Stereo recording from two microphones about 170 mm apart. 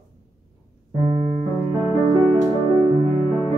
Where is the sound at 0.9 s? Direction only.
30° right (ahead or behind).